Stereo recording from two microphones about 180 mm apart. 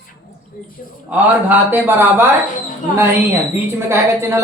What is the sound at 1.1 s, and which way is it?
A man's voice, 10° right (ahead or behind).